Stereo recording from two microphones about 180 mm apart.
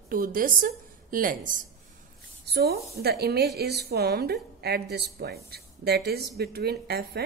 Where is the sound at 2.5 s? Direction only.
60° right (ahead or behind).